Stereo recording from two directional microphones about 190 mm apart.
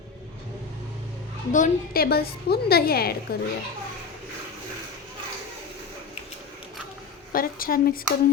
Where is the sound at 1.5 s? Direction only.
45° left (ahead or behind).